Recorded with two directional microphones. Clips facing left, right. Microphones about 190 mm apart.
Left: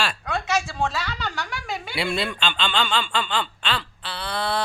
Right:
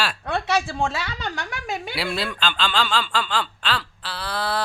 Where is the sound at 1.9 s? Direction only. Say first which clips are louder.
Left 4 dB; centre (ahead or behind).